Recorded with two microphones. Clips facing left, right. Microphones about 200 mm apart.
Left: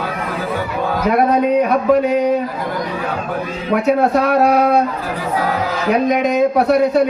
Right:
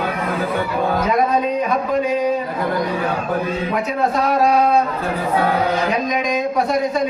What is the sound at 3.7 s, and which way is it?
Speech, 65° left (ahead or behind).